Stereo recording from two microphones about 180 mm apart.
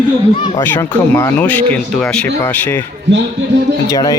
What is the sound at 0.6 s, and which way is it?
Speech, 15° left (ahead or behind).